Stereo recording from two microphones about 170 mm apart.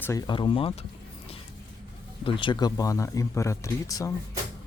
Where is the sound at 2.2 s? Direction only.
30° left (ahead or behind).